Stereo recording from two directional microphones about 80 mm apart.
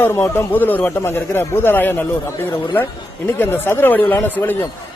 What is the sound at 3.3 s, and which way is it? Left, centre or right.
A man's voice, left.